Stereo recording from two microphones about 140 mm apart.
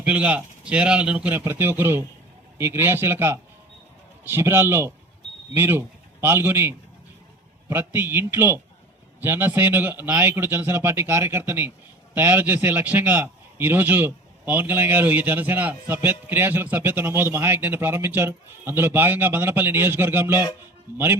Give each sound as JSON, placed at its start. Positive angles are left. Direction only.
{"t": 0.0, "sound": "a man's voice", "side_deg": -10}